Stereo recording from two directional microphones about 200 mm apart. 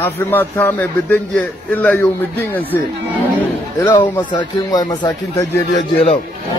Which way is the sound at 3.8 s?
15° left (ahead or behind).